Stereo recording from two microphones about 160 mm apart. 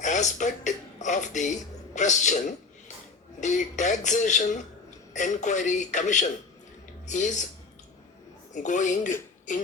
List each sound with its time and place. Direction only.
0.0 s speech: 50° left (ahead or behind)
3.4 s speech: 50° left (ahead or behind)
8.5 s speech: 50° left (ahead or behind)